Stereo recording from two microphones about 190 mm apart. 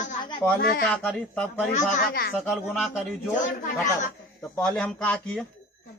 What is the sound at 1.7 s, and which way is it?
Speech, 40° left (ahead or behind).